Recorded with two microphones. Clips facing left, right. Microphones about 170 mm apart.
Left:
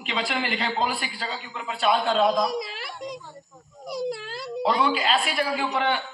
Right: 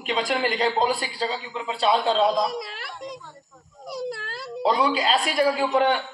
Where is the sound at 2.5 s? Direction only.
5° left (ahead or behind).